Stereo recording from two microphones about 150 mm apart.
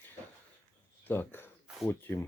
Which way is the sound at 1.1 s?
15° left (ahead or behind).